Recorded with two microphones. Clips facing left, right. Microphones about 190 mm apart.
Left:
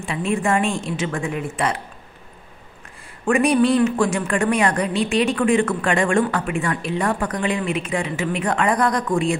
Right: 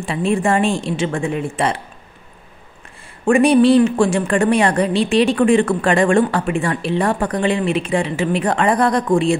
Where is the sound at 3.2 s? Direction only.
30° right (ahead or behind).